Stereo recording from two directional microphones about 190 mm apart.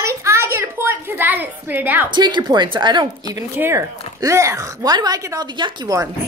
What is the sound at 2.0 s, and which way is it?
A woman's voice, 25° right (ahead or behind).